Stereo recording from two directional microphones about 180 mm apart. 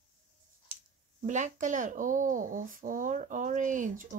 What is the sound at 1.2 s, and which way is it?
Speech, 45° right (ahead or behind).